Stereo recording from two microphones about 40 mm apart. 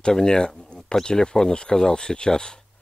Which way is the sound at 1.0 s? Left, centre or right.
Centre.